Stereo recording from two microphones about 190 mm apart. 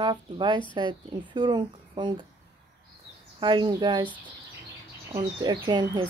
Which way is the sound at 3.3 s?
25° right (ahead or behind).